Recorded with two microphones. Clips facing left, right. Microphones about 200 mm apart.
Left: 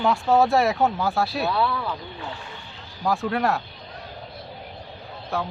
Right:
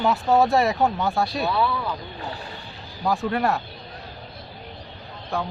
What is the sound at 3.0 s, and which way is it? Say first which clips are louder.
Speech: even; centre (ahead or behind).